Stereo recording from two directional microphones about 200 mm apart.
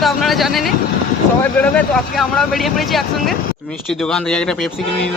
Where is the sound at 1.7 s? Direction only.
5° left (ahead or behind).